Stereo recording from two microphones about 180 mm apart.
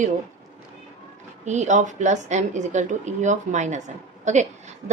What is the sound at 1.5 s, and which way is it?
A woman's voice, 40° right (ahead or behind).